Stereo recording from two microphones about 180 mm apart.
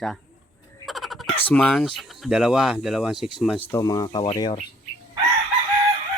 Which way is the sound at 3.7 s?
20° left (ahead or behind).